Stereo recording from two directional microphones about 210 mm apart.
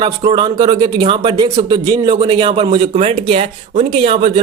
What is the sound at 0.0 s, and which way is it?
Speech, 20° right (ahead or behind).